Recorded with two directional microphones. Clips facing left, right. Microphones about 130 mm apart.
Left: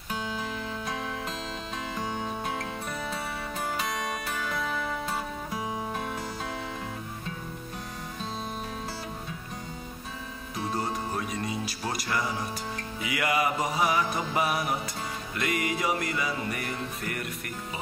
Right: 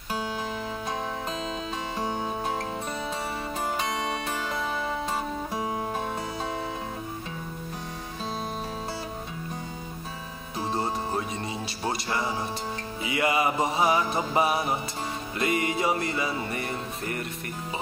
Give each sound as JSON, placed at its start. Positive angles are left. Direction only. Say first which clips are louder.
{"t": 0.2, "sound": "music", "louder": "right 1 dB", "side_deg": 0}
{"t": 2.0, "sound": "music", "louder": "right 3 dB", "side_deg": -25}
{"t": 3.8, "sound": "music", "louder": "right 3 dB", "side_deg": -30}
{"t": 10.6, "sound": "music", "louder": "right 2 dB", "side_deg": -25}